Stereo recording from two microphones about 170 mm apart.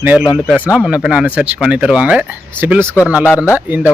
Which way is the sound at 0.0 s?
5° right (ahead or behind).